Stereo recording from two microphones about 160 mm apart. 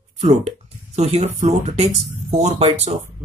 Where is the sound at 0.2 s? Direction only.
40° right (ahead or behind).